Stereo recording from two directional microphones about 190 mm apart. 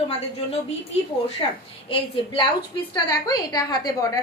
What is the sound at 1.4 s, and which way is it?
Speech, 25° left (ahead or behind).